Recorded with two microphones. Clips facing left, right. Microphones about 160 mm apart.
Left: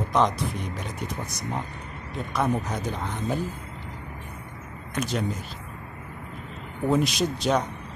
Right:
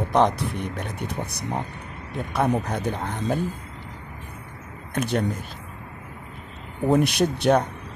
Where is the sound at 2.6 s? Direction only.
60° right (ahead or behind).